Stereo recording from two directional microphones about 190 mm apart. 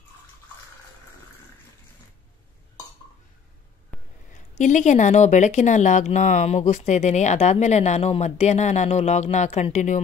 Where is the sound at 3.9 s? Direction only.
5° left (ahead or behind).